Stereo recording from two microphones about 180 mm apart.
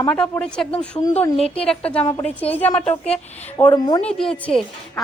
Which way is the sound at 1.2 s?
35° left (ahead or behind).